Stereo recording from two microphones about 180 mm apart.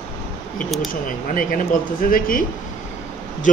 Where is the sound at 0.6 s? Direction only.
Centre (ahead or behind).